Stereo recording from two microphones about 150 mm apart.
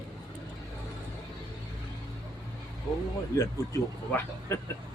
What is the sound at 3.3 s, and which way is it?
Speech, 20° left (ahead or behind).